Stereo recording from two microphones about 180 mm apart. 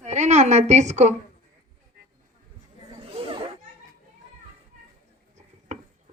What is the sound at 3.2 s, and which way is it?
Children playing, 35° right (ahead or behind).